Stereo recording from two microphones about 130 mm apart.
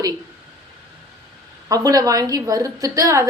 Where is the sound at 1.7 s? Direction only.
30° right (ahead or behind).